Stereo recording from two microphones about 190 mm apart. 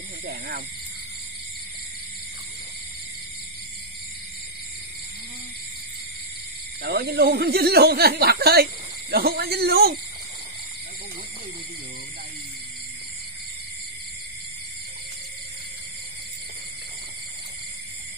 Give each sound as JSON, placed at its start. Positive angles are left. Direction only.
{"t": 0.2, "sound": "speech", "side_deg": -55}
{"t": 6.8, "sound": "speech", "side_deg": -55}